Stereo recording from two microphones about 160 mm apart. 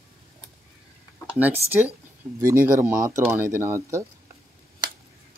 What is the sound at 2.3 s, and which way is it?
Speech, 15° right (ahead or behind).